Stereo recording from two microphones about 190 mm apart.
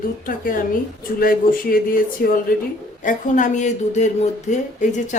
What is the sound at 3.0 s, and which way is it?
Speech, 40° left (ahead or behind).